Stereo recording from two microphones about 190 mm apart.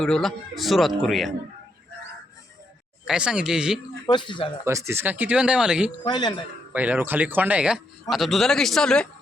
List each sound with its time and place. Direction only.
0.0 s speech: centre (ahead or behind)
3.1 s speech: 5° right (ahead or behind)
4.0 s speech: 25° left (ahead or behind)
4.6 s speech: 15° right (ahead or behind)
6.1 s speech: 25° left (ahead or behind)
6.7 s speech: 10° right (ahead or behind)